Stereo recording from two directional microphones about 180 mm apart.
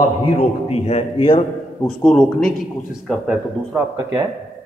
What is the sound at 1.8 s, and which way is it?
A man's voice, 5° left (ahead or behind).